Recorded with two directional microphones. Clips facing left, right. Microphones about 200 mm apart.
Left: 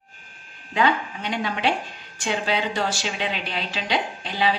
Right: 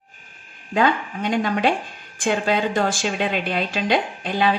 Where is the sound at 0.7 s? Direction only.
45° right (ahead or behind).